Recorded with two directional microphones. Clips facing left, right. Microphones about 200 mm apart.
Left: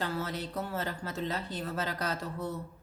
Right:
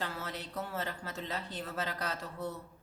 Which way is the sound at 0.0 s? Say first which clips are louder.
Left 5 dB; 40° left (ahead or behind).